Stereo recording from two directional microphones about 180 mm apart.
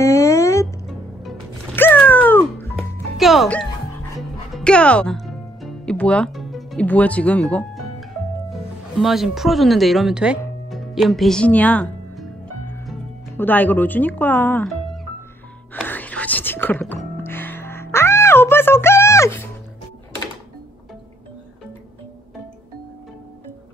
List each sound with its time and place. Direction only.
0.0 s music: 15° left (ahead or behind)
1.8 s music: 10° left (ahead or behind)
3.2 s speech: centre (ahead or behind)
4.6 s music: 5° left (ahead or behind)
8.9 s speech: centre (ahead or behind)
10.7 s music: centre (ahead or behind)
13.4 s speech: 10° left (ahead or behind)
15.7 s whispering: 10° left (ahead or behind)
16.9 s music: 10° left (ahead or behind)